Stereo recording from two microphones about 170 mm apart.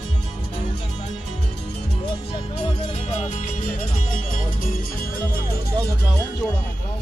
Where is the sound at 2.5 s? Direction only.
40° left (ahead or behind); by 5.1 s 60° left (ahead or behind).